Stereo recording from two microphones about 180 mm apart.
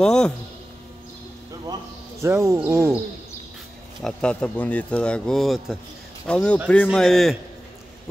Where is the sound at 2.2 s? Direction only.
15° right (ahead or behind).